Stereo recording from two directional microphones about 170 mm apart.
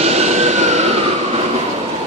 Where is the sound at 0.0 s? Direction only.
40° right (ahead or behind).